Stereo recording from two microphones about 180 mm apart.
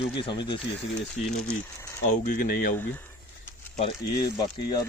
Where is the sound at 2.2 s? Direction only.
50° left (ahead or behind).